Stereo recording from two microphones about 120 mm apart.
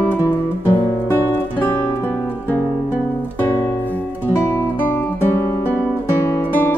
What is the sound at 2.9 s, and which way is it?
Music, 15° left (ahead or behind).